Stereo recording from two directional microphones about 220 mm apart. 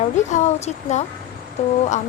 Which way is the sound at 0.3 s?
30° left (ahead or behind).